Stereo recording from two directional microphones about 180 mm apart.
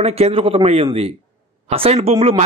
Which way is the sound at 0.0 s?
35° right (ahead or behind).